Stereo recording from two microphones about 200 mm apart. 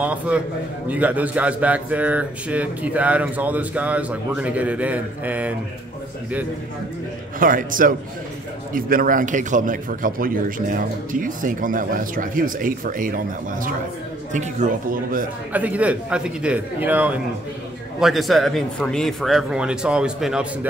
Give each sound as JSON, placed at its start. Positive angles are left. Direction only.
{"t": 0.0, "sound": "speech", "side_deg": -5}
{"t": 7.3, "sound": "a man's voice", "side_deg": -45}
{"t": 15.5, "sound": "speech", "side_deg": -5}